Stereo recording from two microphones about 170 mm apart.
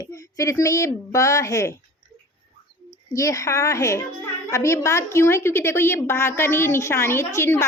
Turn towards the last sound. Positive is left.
turn(degrees=15)  # may be behind; listen again after turning